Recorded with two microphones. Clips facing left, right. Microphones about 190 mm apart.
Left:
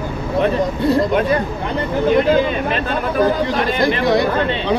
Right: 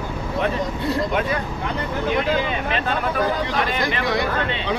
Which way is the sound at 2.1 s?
45° left (ahead or behind).